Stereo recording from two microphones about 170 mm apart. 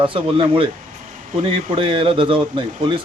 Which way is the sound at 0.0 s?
30° right (ahead or behind).